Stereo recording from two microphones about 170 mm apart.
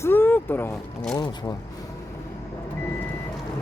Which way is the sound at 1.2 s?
25° left (ahead or behind).